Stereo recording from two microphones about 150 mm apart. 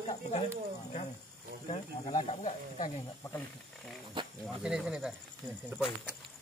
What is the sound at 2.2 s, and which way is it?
Speech, 50° left (ahead or behind).